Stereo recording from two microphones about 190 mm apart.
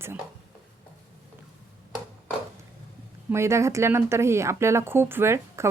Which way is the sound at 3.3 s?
15° right (ahead or behind).